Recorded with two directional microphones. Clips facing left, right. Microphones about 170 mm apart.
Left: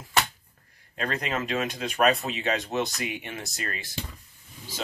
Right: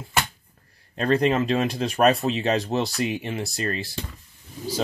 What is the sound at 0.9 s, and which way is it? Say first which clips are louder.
Speech: right 9 dB; 35° right (ahead or behind).